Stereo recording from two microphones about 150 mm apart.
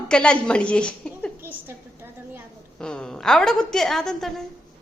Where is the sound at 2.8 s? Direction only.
5° left (ahead or behind).